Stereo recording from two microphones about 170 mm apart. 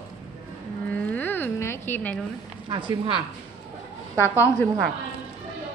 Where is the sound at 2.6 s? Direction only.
30° right (ahead or behind).